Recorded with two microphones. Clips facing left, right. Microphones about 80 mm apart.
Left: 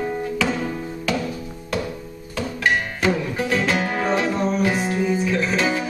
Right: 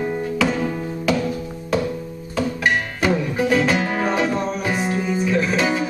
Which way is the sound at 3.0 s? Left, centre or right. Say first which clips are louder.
Right 4 dB; centre.